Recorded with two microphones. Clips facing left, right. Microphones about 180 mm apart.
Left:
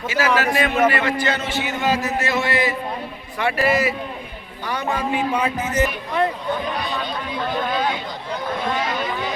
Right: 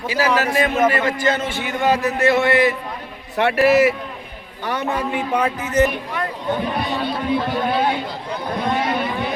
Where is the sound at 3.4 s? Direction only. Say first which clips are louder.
Right 5 dB; 70° right (ahead or behind).